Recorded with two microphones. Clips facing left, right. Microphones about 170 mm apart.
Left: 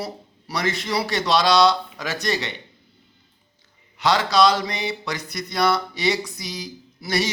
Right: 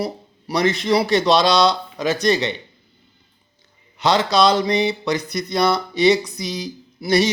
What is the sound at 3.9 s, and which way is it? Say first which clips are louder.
A man's voice: right 2 dB; 20° right (ahead or behind).